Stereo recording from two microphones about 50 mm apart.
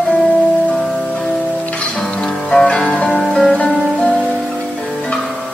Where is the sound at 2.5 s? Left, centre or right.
Centre.